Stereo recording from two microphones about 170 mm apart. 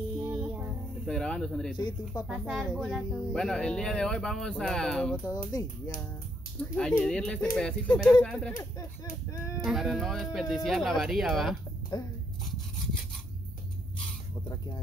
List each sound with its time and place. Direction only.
0.3 s music: 15° right (ahead or behind)
1.0 s a sound: 5° left (ahead or behind)
1.8 s speech: 25° left (ahead or behind)
2.2 s speech: centre (ahead or behind)
5.2 s speech: 20° left (ahead or behind)
6.8 s speech: 5° left (ahead or behind)
9.7 s speech: centre (ahead or behind)
11.9 s speech: 25° left (ahead or behind)